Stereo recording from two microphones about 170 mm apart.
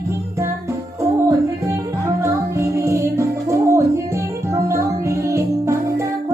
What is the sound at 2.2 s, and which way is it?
Music, 15° right (ahead or behind).